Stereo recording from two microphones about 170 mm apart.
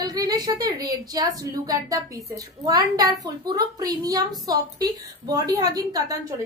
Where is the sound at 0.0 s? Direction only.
20° right (ahead or behind).